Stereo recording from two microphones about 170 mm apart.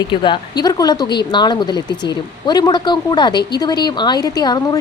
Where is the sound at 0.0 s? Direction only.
25° left (ahead or behind).